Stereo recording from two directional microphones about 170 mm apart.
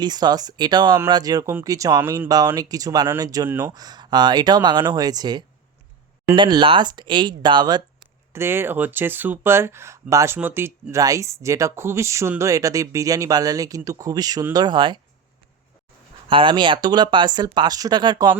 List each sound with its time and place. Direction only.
0.0 s speech: 25° right (ahead or behind)
8.3 s speech: 15° right (ahead or behind)
16.3 s speech: 30° right (ahead or behind)